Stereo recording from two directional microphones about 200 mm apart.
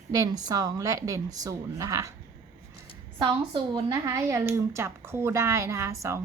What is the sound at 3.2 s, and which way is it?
A woman's voice, 20° right (ahead or behind).